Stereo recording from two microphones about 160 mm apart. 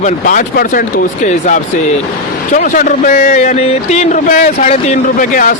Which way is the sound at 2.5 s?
55° left (ahead or behind).